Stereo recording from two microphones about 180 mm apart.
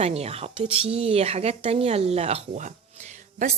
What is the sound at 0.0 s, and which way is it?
A woman's voice, 35° right (ahead or behind).